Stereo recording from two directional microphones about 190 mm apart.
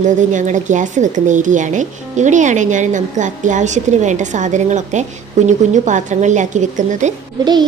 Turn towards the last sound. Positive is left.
turn(degrees=-20)  # may be behind; listen again after turning